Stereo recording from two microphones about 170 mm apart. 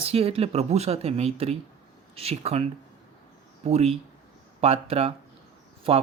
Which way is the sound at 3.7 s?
40° right (ahead or behind).